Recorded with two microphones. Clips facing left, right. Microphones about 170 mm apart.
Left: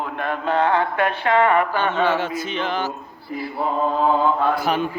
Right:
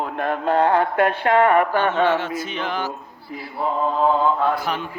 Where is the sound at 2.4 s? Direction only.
10° right (ahead or behind).